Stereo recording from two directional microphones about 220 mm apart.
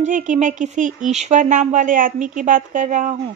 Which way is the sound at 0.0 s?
35° right (ahead or behind).